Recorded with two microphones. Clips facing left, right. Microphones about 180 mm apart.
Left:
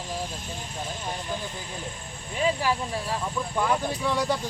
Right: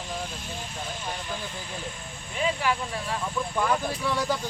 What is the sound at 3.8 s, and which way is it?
Speech, 15° left (ahead or behind).